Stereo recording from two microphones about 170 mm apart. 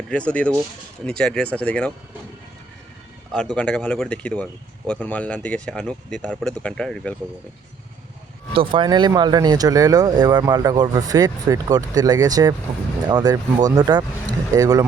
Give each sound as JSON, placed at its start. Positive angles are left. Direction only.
{"t": 0.1, "sound": "speech", "side_deg": 5}
{"t": 3.3, "sound": "speech", "side_deg": 5}
{"t": 8.5, "sound": "speech", "side_deg": -30}